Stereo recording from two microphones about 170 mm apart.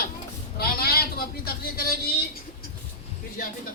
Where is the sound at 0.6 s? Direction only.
65° left (ahead or behind).